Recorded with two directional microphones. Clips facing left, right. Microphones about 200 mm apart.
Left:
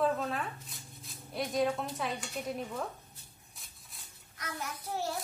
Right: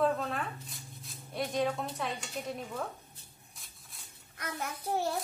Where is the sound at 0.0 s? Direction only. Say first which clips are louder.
Right 1 dB; centre (ahead or behind).